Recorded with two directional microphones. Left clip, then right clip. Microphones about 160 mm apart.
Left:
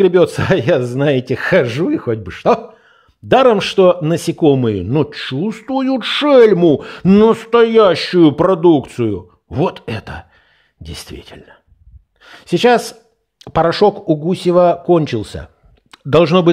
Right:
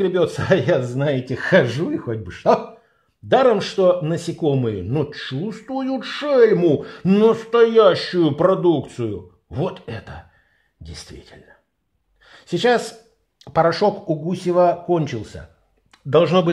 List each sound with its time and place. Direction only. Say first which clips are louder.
0.0 s speech: left 8 dB; 35° left (ahead or behind)
6.5 s speech: left 5 dB; 25° left (ahead or behind)
7.3 s a man's voice: left 4 dB; 40° left (ahead or behind)